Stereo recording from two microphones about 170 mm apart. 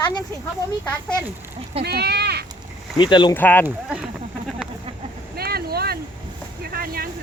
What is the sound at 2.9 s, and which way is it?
Speech, 25° left (ahead or behind).